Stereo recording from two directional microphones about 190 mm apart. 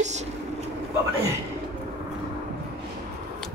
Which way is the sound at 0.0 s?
35° right (ahead or behind).